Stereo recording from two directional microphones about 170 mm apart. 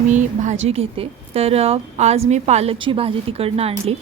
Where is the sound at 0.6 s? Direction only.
35° right (ahead or behind).